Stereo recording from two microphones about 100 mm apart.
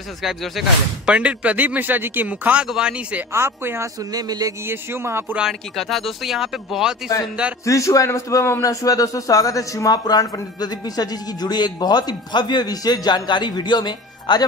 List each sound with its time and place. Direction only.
0.2 s speech: centre (ahead or behind)
1.1 s speech: 15° right (ahead or behind)
3.3 s speech: 25° right (ahead or behind)
4.1 s speech: 40° right (ahead or behind)
4.6 s speech: 25° right (ahead or behind)
5.3 s speech: 5° right (ahead or behind)
7.6 s a man's voice: 35° left (ahead or behind); by 14.4 s 50° left (ahead or behind)